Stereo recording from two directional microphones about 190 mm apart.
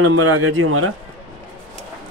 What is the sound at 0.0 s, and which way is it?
Speech, 90° right.